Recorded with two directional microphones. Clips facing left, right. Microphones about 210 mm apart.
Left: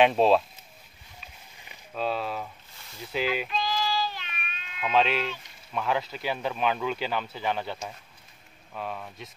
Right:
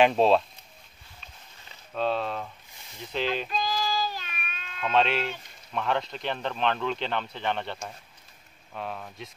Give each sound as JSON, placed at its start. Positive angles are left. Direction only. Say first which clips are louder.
{"t": 0.0, "sound": "speech", "louder": "even", "side_deg": 0}
{"t": 1.2, "sound": "a sound", "louder": "even", "side_deg": 15}
{"t": 2.0, "sound": "speech", "louder": "right 2 dB", "side_deg": 5}
{"t": 3.4, "sound": "child singing", "louder": "even", "side_deg": -40}
{"t": 4.7, "sound": "speech", "louder": "even", "side_deg": 5}